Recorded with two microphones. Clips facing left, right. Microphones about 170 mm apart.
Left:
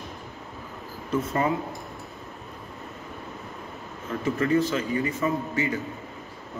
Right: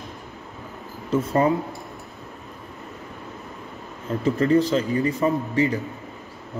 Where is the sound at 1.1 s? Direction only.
35° right (ahead or behind).